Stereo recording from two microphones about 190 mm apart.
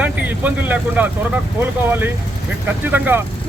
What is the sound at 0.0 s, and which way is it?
Speech, 10° right (ahead or behind).